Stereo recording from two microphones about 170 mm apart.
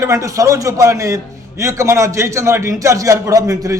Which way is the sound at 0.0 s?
20° right (ahead or behind).